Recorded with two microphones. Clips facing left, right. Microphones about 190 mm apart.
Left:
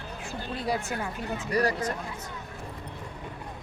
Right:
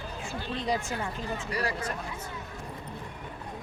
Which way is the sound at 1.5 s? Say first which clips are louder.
Left 7 dB; 40° left (ahead or behind).